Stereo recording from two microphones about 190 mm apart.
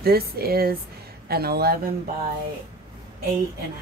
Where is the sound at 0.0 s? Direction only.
55° right (ahead or behind).